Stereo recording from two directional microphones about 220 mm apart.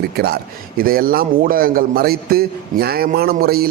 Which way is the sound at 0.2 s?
45° right (ahead or behind).